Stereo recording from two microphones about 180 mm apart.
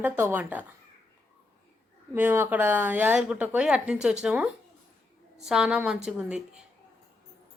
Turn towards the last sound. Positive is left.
turn(degrees=-5)  # may be behind; listen again after turning